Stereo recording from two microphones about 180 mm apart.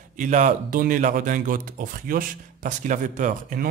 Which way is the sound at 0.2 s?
45° right (ahead or behind).